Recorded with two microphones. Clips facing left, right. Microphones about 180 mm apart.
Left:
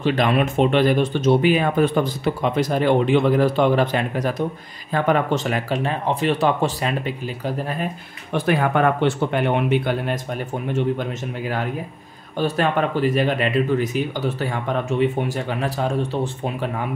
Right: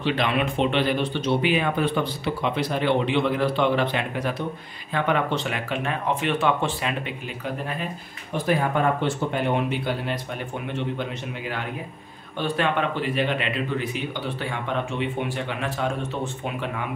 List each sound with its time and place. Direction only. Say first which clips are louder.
0.0 s a man's voice: left 5 dB; 45° left (ahead or behind)
8.3 s speech: left 3 dB; 70° left (ahead or behind)
10.7 s a man's voice: left 7 dB; 40° left (ahead or behind)